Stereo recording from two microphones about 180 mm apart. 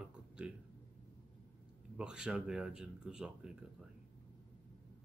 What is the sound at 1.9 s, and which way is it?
Speech, 5° right (ahead or behind).